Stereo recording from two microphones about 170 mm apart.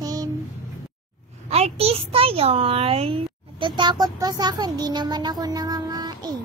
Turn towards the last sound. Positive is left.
turn(degrees=-25)  # may be behind; listen again after turning